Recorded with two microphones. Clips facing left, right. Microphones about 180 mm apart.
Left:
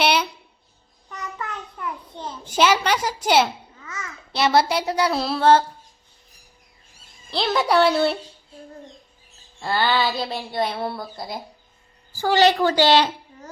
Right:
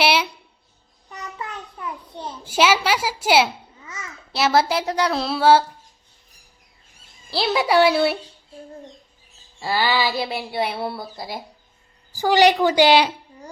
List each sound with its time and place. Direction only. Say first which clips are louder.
0.0 s a sound: right 1 dB; 5° right (ahead or behind)
1.1 s a sound: left 1 dB; 15° right (ahead or behind)
3.8 s babbling: left 2 dB; 15° right (ahead or behind)
4.3 s a woman's voice: even; centre (ahead or behind)
7.3 s a woman's voice: right 1 dB; 5° right (ahead or behind)
9.6 s a woman's voice: even; 5° right (ahead or behind)
12.1 s a woman's voice: right 2 dB; 15° right (ahead or behind)